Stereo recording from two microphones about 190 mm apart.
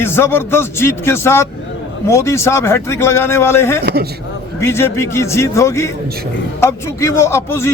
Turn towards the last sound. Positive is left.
turn(degrees=15)  # may be behind; listen again after turning